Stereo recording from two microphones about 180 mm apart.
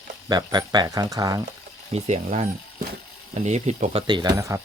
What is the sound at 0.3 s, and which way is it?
Speech, 25° right (ahead or behind).